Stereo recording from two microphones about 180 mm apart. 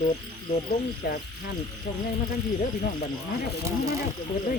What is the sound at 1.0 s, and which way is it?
Speech, 60° left (ahead or behind).